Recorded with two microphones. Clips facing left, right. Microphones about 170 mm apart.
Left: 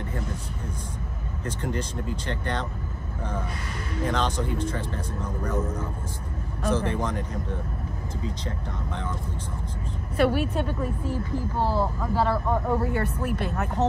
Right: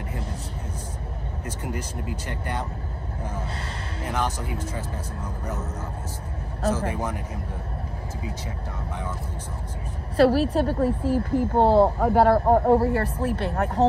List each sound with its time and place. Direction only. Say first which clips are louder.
1.4 s speech: left 3 dB; 10° right (ahead or behind)
4.1 s speech: even; 10° right (ahead or behind)
6.7 s speech: left 2 dB; 10° right (ahead or behind)
10.1 s speech: right 5 dB; 30° right (ahead or behind)
10.8 s speech: right 7 dB; 70° right (ahead or behind)
12.4 s speech: right 7 dB; 35° right (ahead or behind)